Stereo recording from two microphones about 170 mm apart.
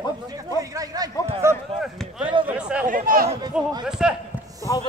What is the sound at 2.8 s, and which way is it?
Speech, 55° right (ahead or behind).